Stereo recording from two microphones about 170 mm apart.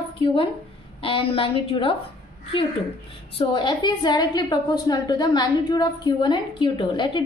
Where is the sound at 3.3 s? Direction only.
30° left (ahead or behind).